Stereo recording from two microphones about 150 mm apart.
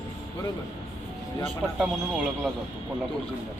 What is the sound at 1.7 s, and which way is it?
Speech, 5° right (ahead or behind).